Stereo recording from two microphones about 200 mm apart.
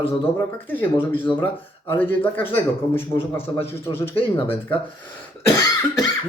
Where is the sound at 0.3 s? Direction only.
10° left (ahead or behind).